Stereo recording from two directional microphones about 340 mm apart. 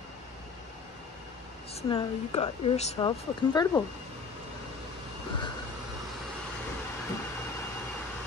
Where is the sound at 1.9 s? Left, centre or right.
Centre.